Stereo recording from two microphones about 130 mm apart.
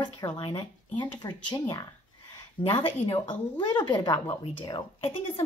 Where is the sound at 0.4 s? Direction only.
35° left (ahead or behind).